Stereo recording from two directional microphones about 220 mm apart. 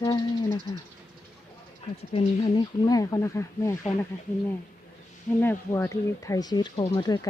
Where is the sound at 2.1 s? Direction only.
20° left (ahead or behind).